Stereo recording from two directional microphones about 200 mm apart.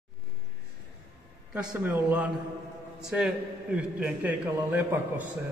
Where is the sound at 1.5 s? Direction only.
5° right (ahead or behind).